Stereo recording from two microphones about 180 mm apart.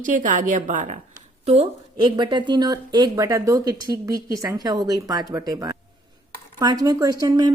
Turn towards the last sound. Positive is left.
turn(degrees=-20)  # may be behind; listen again after turning